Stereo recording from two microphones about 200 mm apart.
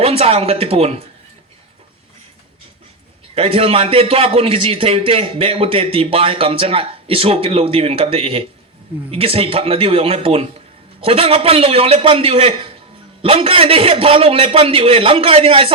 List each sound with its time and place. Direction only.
0.0 s a man's voice: 30° right (ahead or behind)
3.3 s a man's voice: 30° right (ahead or behind)